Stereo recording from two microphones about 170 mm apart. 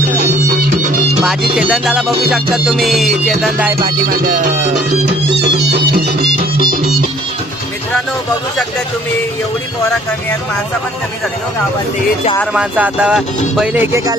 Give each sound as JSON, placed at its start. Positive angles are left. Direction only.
{"t": 0.4, "sound": "music", "side_deg": -50}
{"t": 1.2, "sound": "music", "side_deg": 0}
{"t": 5.4, "sound": "music", "side_deg": -75}
{"t": 12.5, "sound": "speech", "side_deg": -10}